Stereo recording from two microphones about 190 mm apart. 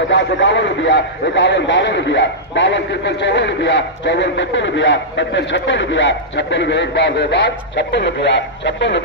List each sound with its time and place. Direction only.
0.1 s a man's voice: 70° left (ahead or behind)